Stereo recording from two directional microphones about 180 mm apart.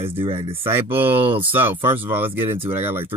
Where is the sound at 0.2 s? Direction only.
30° right (ahead or behind).